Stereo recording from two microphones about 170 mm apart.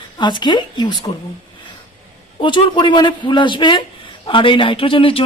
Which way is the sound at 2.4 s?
30° left (ahead or behind).